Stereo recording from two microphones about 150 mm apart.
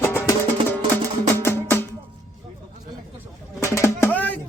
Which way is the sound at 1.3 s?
15° left (ahead or behind).